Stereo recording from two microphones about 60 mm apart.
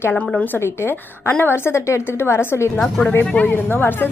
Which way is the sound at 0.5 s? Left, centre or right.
Left.